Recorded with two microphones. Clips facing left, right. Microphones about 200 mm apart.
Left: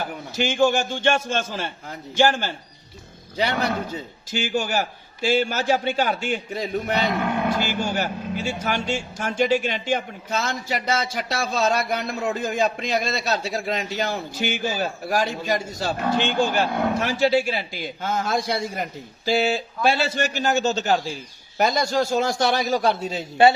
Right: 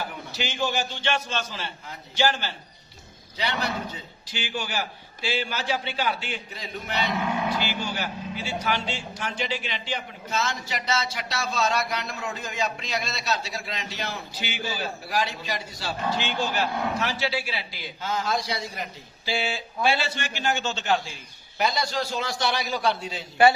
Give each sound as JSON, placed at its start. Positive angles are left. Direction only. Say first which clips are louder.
{"t": 0.0, "sound": "a man's voice", "louder": "left 6 dB", "side_deg": 50}